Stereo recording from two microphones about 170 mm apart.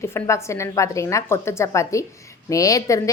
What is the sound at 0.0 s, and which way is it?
A woman's voice, 15° left (ahead or behind).